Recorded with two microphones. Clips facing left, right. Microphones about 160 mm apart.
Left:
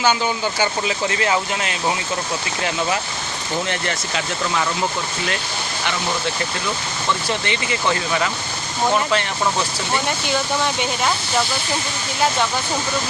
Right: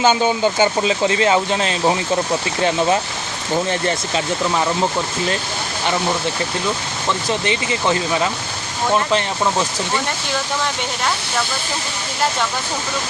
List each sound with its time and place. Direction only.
0.0 s speech: 25° right (ahead or behind)
3.7 s speech: 25° right (ahead or behind)
7.3 s speech: 25° right (ahead or behind)